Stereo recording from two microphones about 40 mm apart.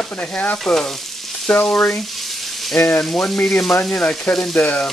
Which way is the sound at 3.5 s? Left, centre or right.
Centre.